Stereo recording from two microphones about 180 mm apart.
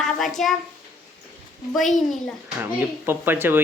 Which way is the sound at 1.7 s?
Centre (ahead or behind).